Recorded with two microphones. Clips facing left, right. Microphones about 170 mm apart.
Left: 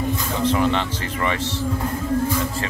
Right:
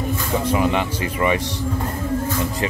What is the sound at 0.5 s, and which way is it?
Speech, 10° right (ahead or behind).